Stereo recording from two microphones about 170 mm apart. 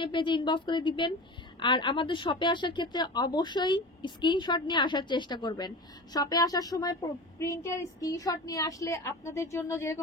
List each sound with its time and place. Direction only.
0.0 s a woman's voice: 30° left (ahead or behind)